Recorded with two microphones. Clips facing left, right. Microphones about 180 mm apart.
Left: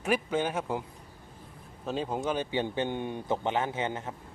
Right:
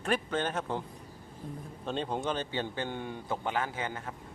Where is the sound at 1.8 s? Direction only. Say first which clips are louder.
Left 2 dB; 5° left (ahead or behind); by 4.1 s 20° left (ahead or behind).